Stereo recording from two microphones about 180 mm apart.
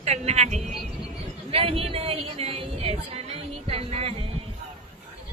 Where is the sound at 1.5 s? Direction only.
30° right (ahead or behind).